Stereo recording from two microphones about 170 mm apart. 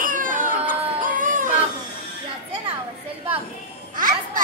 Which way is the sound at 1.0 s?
50° right (ahead or behind).